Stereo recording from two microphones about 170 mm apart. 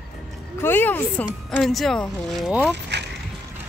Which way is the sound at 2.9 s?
90° right.